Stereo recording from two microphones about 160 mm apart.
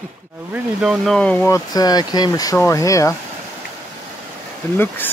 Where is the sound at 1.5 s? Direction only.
25° left (ahead or behind).